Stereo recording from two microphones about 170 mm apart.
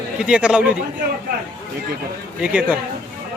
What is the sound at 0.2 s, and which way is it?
Speech, 5° right (ahead or behind).